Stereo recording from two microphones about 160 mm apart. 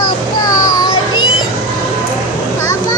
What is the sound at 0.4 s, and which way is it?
Children playing, 25° left (ahead or behind).